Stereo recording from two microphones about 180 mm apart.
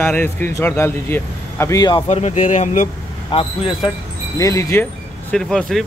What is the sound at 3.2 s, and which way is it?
Speech, 30° left (ahead or behind).